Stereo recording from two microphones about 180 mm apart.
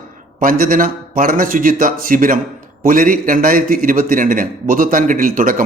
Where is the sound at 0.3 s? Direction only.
50° right (ahead or behind).